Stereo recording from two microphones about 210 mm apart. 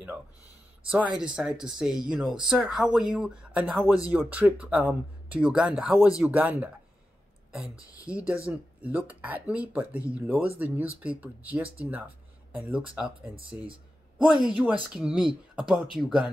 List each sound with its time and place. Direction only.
1.3 s speech: 5° right (ahead or behind)
7.9 s speech: 5° right (ahead or behind)
13.0 s speech: 25° right (ahead or behind)
14.1 s speech: centre (ahead or behind)